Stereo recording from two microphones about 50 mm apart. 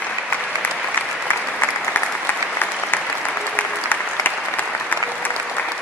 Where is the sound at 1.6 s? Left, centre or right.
Left.